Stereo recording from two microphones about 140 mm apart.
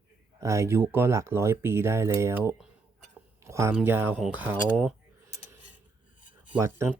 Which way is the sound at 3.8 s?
15° right (ahead or behind).